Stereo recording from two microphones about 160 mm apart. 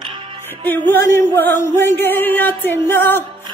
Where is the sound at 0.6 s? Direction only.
15° left (ahead or behind).